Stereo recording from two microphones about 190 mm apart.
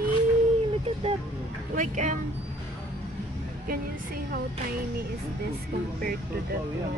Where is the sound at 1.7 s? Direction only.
40° right (ahead or behind).